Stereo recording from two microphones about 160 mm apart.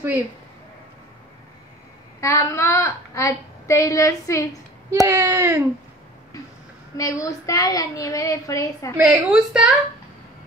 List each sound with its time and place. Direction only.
2.1 s a woman's voice: 20° left (ahead or behind)
5.0 s speech: 15° right (ahead or behind)
7.0 s a woman's voice: 20° left (ahead or behind)
9.0 s a woman's voice: 5° right (ahead or behind)